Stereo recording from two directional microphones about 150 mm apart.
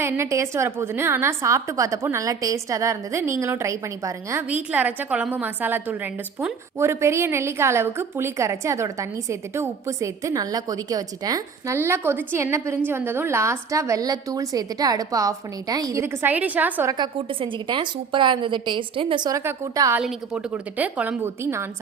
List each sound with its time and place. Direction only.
0.0 s a woman's voice: 15° right (ahead or behind)
17.2 s a woman's voice: 35° right (ahead or behind); by 20.0 s 20° right (ahead or behind)
20.0 s a woman's voice: 5° right (ahead or behind)